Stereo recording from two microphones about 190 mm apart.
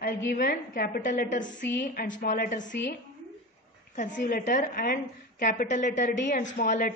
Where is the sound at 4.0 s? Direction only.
45° left (ahead or behind).